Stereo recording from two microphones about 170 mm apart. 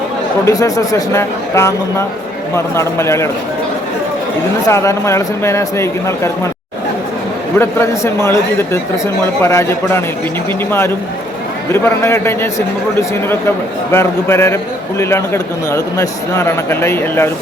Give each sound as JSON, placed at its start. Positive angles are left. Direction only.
{"t": 0.4, "sound": "speech", "side_deg": 20}
{"t": 2.7, "sound": "a man's voice", "side_deg": 15}
{"t": 4.6, "sound": "a man's voice", "side_deg": 15}
{"t": 7.6, "sound": "a man's voice", "side_deg": 15}